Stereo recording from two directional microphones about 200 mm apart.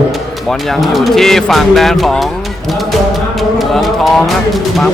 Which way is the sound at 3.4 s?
Centre (ahead or behind).